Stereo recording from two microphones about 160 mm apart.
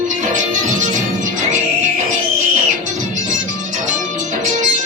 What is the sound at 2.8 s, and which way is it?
Music, 50° right (ahead or behind).